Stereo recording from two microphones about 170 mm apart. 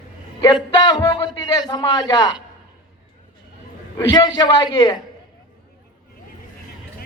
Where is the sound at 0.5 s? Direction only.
25° left (ahead or behind).